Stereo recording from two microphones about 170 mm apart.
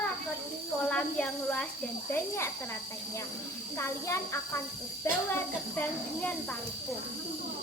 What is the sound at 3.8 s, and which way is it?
Speech, 15° left (ahead or behind).